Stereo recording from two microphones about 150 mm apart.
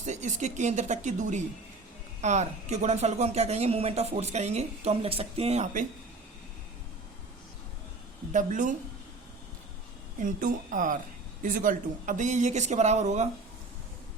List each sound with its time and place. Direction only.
0.0 s a woman's voice: 50° right (ahead or behind)
8.3 s a woman's voice: 60° right (ahead or behind)
10.2 s a woman's voice: 60° right (ahead or behind)